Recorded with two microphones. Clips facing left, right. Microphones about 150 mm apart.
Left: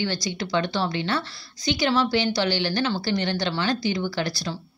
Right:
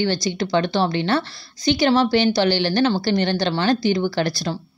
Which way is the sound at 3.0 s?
65° right (ahead or behind).